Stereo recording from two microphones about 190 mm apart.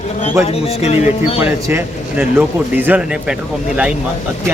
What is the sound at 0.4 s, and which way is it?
Speech, 30° left (ahead or behind).